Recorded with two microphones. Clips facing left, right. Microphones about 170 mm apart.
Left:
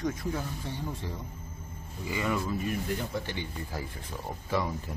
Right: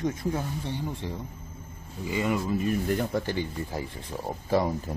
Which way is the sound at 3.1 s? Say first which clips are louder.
Right 6 dB; 45° right (ahead or behind).